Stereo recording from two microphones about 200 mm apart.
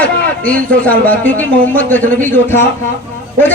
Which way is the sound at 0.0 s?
5° left (ahead or behind).